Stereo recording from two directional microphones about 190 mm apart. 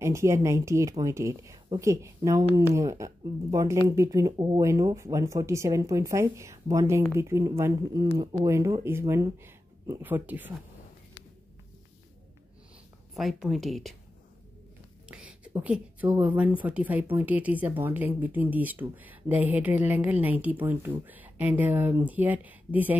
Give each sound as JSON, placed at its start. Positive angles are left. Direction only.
{"t": 0.0, "sound": "speech", "side_deg": -15}
{"t": 13.1, "sound": "speech", "side_deg": 0}
{"t": 15.0, "sound": "speech", "side_deg": -5}